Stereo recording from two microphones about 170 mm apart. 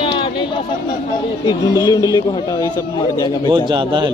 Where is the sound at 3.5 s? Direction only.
25° right (ahead or behind).